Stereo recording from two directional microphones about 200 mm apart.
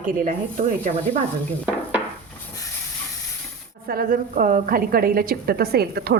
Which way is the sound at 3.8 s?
45° right (ahead or behind).